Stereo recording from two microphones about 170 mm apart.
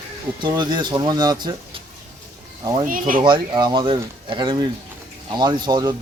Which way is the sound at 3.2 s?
25° right (ahead or behind).